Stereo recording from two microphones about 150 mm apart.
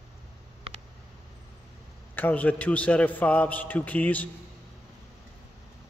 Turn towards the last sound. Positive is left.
turn(degrees=10)  # may be behind; listen again after turning